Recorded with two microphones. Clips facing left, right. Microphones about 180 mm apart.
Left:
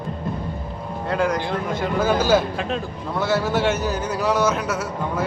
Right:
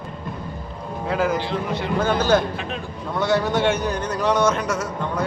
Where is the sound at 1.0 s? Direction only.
Centre (ahead or behind).